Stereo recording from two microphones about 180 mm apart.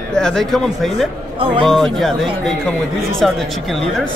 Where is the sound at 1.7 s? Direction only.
5° left (ahead or behind).